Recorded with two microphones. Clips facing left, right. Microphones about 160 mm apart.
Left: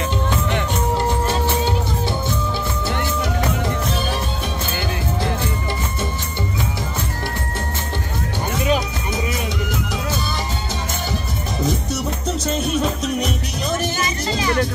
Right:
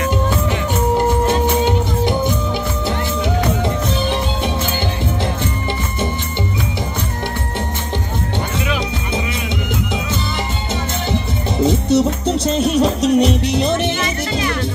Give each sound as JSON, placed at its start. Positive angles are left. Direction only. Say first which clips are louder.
{"t": 0.9, "sound": "music", "louder": "right 6 dB", "side_deg": -15}
{"t": 11.6, "sound": "music", "louder": "right 9 dB", "side_deg": -30}